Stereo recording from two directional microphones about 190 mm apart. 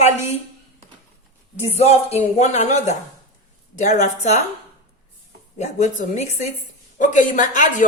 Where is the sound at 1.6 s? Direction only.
35° left (ahead or behind).